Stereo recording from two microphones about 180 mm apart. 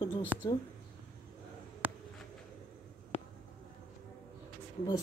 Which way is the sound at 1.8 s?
10° right (ahead or behind).